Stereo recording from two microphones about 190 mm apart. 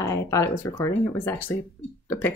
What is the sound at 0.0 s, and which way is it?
Speech, 15° left (ahead or behind).